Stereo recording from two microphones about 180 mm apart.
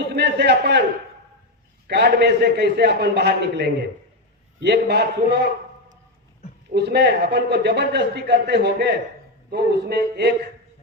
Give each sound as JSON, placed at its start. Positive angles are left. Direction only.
{"t": 0.0, "sound": "a sound", "side_deg": -70}
{"t": 1.9, "sound": "a man's voice", "side_deg": -65}
{"t": 6.7, "sound": "a man's voice", "side_deg": -70}